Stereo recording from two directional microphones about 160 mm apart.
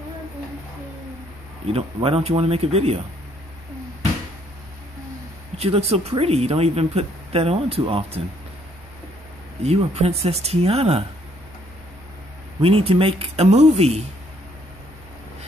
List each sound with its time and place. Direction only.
2.0 s speech: 35° right (ahead or behind)
5.6 s speech: 40° right (ahead or behind)
9.6 s speech: 40° right (ahead or behind)
12.6 s speech: 35° right (ahead or behind)